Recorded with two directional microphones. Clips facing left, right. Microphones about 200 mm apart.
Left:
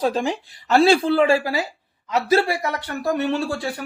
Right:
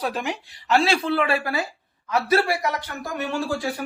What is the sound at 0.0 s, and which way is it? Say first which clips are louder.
Speech: left 6 dB; 30° left (ahead or behind).